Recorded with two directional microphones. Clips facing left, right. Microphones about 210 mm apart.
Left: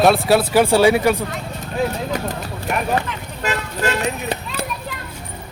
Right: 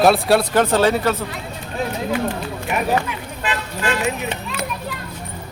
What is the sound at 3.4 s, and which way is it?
Vehicle, 40° left (ahead or behind).